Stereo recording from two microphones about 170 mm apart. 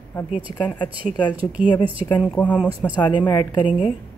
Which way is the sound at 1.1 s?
25° left (ahead or behind).